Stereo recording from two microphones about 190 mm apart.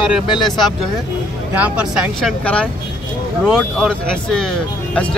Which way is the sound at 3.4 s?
5° right (ahead or behind).